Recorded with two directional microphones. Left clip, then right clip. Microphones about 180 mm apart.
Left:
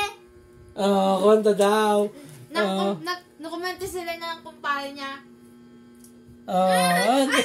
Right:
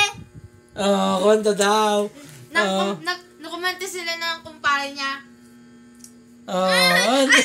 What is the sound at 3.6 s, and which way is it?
Speech, 45° left (ahead or behind).